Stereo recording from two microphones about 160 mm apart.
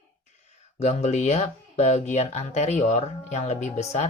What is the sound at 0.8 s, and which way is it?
Speech, 45° left (ahead or behind).